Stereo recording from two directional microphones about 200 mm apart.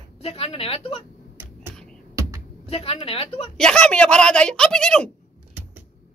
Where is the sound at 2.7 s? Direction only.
30° left (ahead or behind).